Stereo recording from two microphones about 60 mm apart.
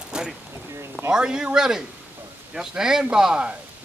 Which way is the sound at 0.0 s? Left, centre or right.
Centre.